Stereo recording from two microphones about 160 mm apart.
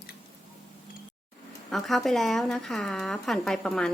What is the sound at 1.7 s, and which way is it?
A woman's voice, centre (ahead or behind).